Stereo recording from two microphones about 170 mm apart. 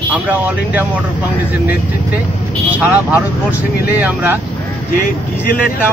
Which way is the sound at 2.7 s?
10° right (ahead or behind).